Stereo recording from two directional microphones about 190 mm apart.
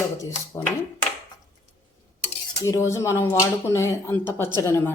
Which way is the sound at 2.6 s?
15° left (ahead or behind).